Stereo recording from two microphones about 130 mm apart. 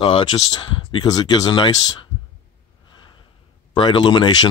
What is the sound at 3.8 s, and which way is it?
Speech, 35° left (ahead or behind).